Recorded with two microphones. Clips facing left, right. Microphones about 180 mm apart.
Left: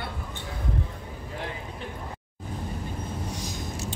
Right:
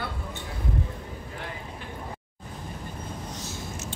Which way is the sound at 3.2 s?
10° left (ahead or behind).